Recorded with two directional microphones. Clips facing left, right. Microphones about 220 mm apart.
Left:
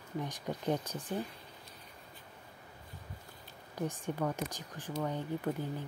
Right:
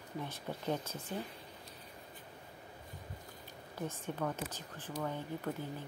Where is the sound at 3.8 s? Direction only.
15° left (ahead or behind).